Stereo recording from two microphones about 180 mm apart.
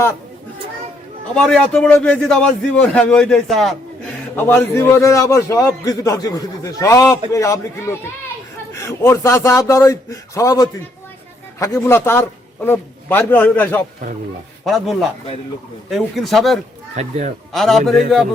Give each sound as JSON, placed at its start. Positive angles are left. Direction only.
{"t": 1.4, "sound": "a man's voice", "side_deg": 5}
{"t": 14.6, "sound": "a man's voice", "side_deg": 0}
{"t": 16.9, "sound": "speech", "side_deg": -40}
{"t": 17.5, "sound": "a man's voice", "side_deg": 0}